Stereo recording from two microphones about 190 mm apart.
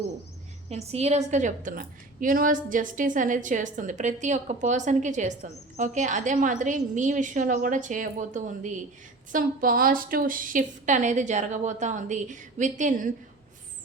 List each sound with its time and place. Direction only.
0.7 s a woman's voice: 35° right (ahead or behind)